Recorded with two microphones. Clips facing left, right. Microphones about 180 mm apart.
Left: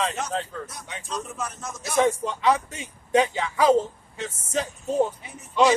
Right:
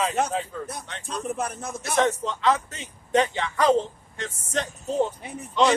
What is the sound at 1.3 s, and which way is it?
Speech, 55° right (ahead or behind).